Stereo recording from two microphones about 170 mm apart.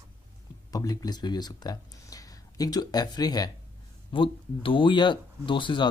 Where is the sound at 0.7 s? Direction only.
20° left (ahead or behind).